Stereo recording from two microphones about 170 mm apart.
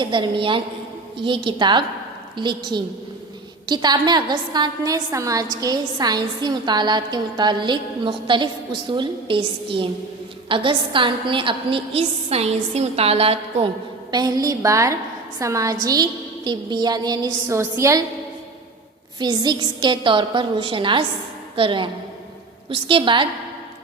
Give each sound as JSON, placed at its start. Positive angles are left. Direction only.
{"t": 0.0, "sound": "a woman's voice", "side_deg": -30}
{"t": 14.1, "sound": "a woman's voice", "side_deg": -25}
{"t": 19.2, "sound": "a woman's voice", "side_deg": -25}